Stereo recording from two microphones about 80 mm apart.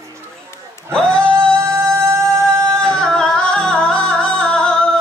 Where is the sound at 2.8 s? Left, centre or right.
Centre.